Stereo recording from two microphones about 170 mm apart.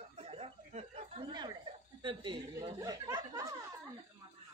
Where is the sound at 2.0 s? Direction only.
30° right (ahead or behind).